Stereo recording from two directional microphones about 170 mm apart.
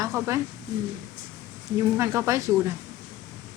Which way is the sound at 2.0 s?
15° right (ahead or behind).